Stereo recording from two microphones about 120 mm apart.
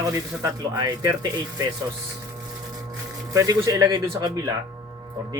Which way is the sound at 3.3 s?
30° right (ahead or behind).